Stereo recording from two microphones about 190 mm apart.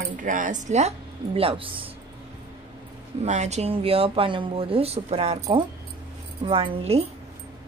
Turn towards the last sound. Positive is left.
turn(degrees=-30)  # may be behind; listen again after turning